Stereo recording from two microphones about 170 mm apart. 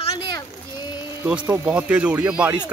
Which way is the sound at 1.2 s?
5° right (ahead or behind).